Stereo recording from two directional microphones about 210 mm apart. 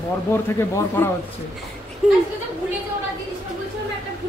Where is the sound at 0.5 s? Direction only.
10° left (ahead or behind).